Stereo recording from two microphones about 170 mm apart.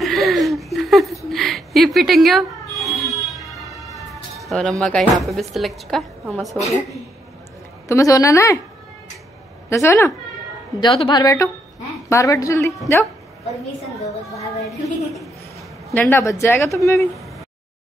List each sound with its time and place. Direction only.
0.0 s a sound: centre (ahead or behind)
4.1 s speech: centre (ahead or behind)
7.9 s speech: 20° left (ahead or behind)
9.7 s speech: 15° left (ahead or behind)
10.8 s a woman's voice: 30° left (ahead or behind)
14.7 s a woman's voice: centre (ahead or behind)
15.9 s speech: 10° left (ahead or behind)